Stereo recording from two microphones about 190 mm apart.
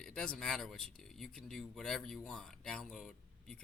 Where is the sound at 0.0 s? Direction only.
5° left (ahead or behind).